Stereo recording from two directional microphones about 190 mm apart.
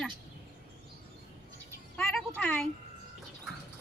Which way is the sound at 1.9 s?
Centre (ahead or behind).